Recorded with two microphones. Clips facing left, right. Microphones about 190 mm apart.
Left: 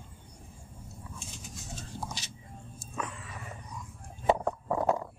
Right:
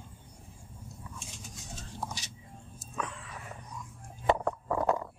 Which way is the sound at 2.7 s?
Centre (ahead or behind).